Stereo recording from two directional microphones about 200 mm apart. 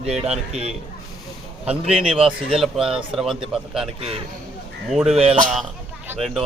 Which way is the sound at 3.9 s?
30° right (ahead or behind).